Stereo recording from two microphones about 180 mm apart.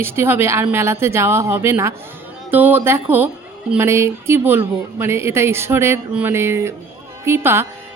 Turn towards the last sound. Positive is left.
turn(degrees=-15)  # may be behind; listen again after turning